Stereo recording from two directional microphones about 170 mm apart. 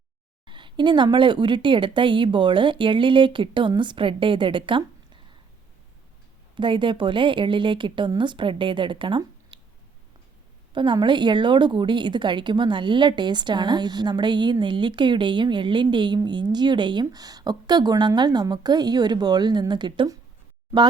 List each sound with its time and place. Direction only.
0.4 s a woman's voice: 30° right (ahead or behind)
6.6 s a woman's voice: 30° right (ahead or behind)
10.7 s a woman's voice: 30° right (ahead or behind)